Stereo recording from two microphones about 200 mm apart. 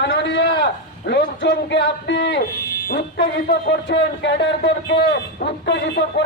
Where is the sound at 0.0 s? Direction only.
60° left (ahead or behind).